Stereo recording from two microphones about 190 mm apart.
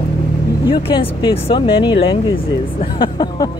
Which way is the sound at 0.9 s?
25° left (ahead or behind).